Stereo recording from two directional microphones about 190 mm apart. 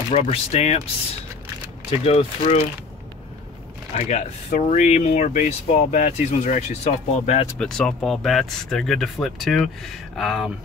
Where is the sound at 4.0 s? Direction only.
40° left (ahead or behind).